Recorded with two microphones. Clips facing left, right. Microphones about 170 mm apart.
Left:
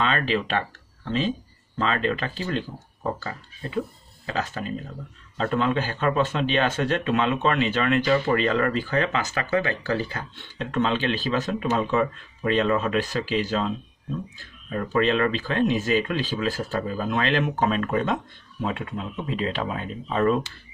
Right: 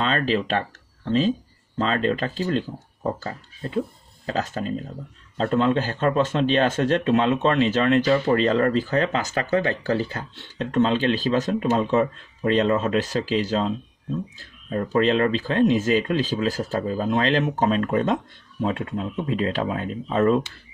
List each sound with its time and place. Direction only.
0.0 s speech: 35° right (ahead or behind)